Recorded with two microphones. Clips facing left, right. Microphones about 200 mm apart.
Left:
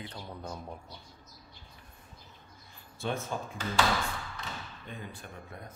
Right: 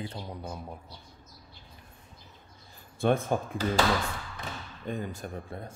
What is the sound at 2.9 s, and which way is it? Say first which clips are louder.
Speech: right 9 dB; 55° right (ahead or behind).